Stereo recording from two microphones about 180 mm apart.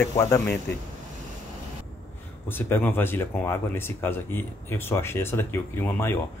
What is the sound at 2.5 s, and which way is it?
Speech, 10° left (ahead or behind).